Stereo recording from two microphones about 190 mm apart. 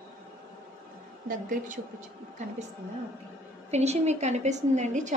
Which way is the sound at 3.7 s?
35° right (ahead or behind).